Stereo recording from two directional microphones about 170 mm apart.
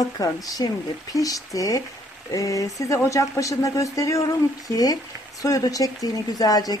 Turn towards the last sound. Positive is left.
turn(degrees=20)  # may be behind; listen again after turning